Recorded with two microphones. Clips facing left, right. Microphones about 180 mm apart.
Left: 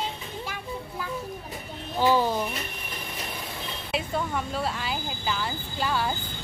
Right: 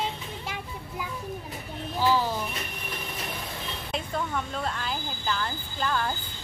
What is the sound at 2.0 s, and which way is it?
Speech, 20° left (ahead or behind).